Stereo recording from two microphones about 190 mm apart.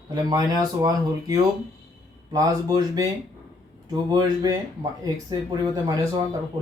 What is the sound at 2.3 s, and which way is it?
Speech, 20° right (ahead or behind).